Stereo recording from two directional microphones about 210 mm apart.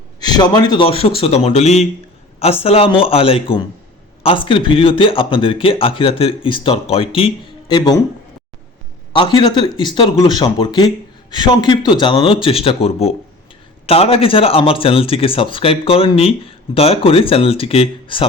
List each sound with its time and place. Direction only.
0.2 s a man's voice: 20° left (ahead or behind)
9.1 s speech: 25° left (ahead or behind)